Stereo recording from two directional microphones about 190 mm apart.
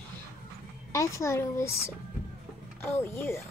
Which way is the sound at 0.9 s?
15° left (ahead or behind).